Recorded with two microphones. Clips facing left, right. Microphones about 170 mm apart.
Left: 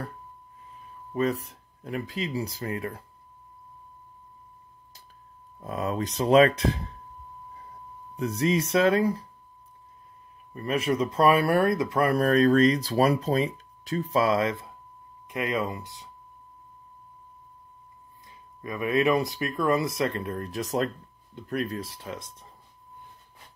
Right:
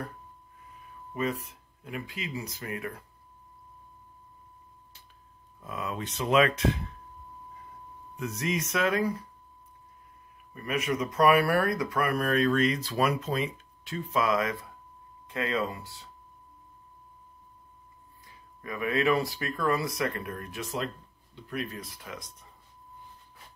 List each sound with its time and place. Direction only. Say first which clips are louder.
1.1 s speech: left 5 dB; 35° left (ahead or behind)
5.6 s speech: left 6 dB; 40° left (ahead or behind)
8.2 s speech: left 6 dB; 30° left (ahead or behind)
10.5 s speech: left 4 dB; 30° left (ahead or behind)
18.6 s speech: left 4 dB; 20° left (ahead or behind)